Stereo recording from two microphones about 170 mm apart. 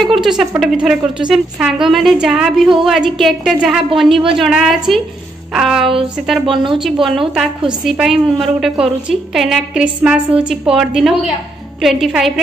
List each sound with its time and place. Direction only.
0.0 s a woman's voice: centre (ahead or behind)
6.4 s a woman's voice: 30° right (ahead or behind)
6.8 s a woman's voice: centre (ahead or behind)